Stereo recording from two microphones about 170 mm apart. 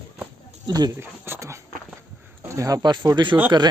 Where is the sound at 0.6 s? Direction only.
25° right (ahead or behind).